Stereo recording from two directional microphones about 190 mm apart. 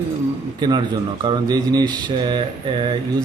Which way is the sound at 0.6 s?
25° right (ahead or behind).